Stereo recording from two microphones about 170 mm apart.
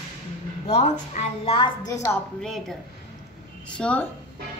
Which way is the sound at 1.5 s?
30° left (ahead or behind).